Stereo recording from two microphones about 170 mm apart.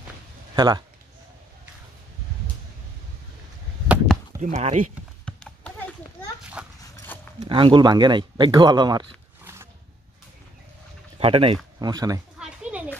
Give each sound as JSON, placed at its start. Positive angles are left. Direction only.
{"t": 0.6, "sound": "speech", "side_deg": -25}
{"t": 4.4, "sound": "speech", "side_deg": -40}
{"t": 5.2, "sound": "clip-clop", "side_deg": 5}
{"t": 6.6, "sound": "dog", "side_deg": -5}
{"t": 7.3, "sound": "speech", "side_deg": -30}
{"t": 9.4, "sound": "a sound", "side_deg": -15}
{"t": 11.1, "sound": "speech", "side_deg": -35}
{"t": 12.4, "sound": "a sound", "side_deg": -5}